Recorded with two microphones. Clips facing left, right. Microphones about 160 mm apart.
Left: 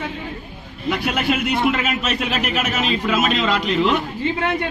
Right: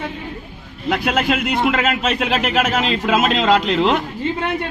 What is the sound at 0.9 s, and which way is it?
A man's voice, 90° right.